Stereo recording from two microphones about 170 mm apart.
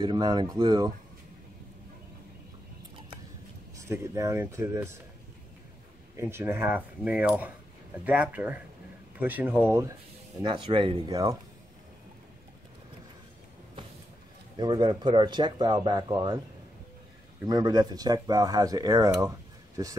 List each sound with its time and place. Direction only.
0.0 s speech: 25° right (ahead or behind)
3.7 s speech: 15° right (ahead or behind)
6.1 s speech: 15° right (ahead or behind)
10.4 s speech: 30° right (ahead or behind)
14.6 s speech: 25° right (ahead or behind)
17.5 s speech: 25° right (ahead or behind)